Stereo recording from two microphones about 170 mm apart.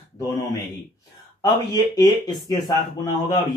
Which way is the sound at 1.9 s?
25° left (ahead or behind).